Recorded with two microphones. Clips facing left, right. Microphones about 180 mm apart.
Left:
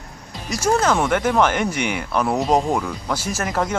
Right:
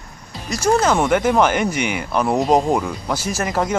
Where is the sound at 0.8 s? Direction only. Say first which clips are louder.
Right 2 dB; 10° right (ahead or behind).